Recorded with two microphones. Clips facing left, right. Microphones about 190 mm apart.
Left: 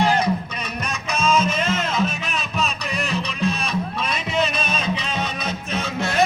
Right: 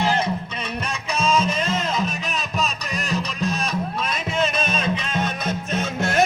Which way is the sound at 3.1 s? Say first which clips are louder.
Even; 40° right (ahead or behind).